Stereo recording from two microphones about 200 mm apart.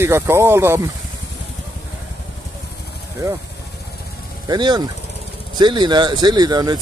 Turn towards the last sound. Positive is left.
turn(degrees=-20)  # may be behind; listen again after turning